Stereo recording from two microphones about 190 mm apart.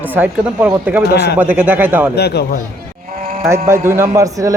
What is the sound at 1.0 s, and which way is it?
Speech, 55° left (ahead or behind).